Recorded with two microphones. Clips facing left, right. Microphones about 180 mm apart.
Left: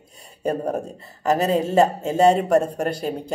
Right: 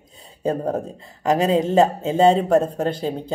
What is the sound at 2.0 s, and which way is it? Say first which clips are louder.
Speech: right 1 dB; 25° right (ahead or behind).